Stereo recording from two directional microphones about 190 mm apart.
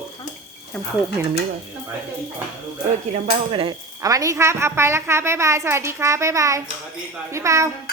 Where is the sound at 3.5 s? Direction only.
25° right (ahead or behind).